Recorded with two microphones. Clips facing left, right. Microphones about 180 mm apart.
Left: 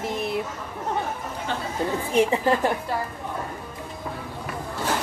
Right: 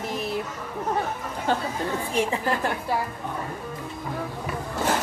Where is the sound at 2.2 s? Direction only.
30° left (ahead or behind).